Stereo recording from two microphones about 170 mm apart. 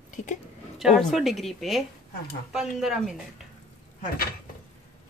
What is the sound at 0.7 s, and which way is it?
Speech, centre (ahead or behind).